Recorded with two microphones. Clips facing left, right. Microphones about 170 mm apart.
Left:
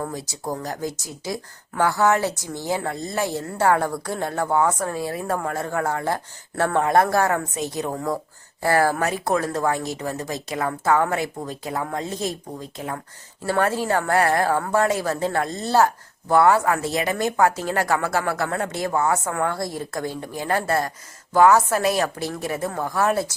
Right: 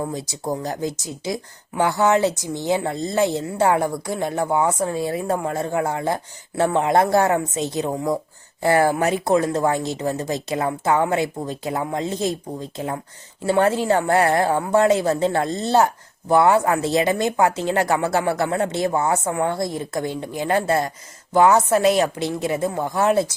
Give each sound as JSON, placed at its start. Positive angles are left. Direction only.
{"t": 0.0, "sound": "a woman's voice", "side_deg": -20}